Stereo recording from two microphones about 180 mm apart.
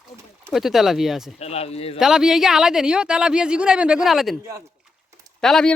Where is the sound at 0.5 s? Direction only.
Centre (ahead or behind).